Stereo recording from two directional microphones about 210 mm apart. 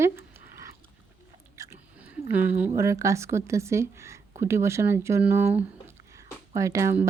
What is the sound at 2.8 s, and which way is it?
Speech, 15° right (ahead or behind).